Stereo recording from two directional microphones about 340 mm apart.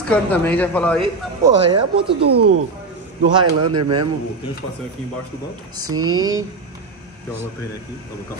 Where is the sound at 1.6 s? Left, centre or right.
Centre.